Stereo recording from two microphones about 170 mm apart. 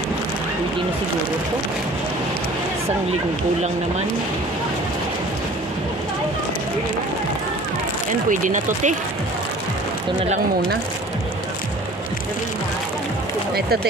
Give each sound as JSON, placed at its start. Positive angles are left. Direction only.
{"t": 8.3, "sound": "speech", "side_deg": -50}